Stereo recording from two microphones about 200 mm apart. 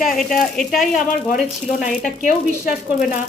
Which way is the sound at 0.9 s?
40° left (ahead or behind).